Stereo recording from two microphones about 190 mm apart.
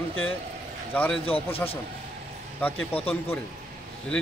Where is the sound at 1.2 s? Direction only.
30° left (ahead or behind).